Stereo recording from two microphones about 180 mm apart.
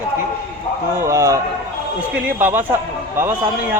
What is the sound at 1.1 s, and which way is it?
A man's voice, 15° right (ahead or behind).